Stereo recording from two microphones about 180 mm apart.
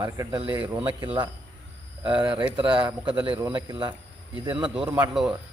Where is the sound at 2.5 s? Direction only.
25° right (ahead or behind).